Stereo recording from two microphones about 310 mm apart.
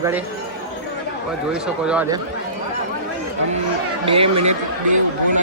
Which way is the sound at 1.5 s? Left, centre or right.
Centre.